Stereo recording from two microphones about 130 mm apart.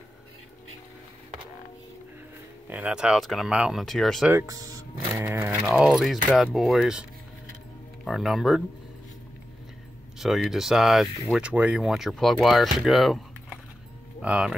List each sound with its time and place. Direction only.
2.7 s speech: 10° right (ahead or behind)
4.3 s speech: 25° right (ahead or behind)
5.2 s a sound: 15° right (ahead or behind)
5.8 s speech: centre (ahead or behind)
10.1 s speech: centre (ahead or behind)
14.2 s a sound: 5° right (ahead or behind)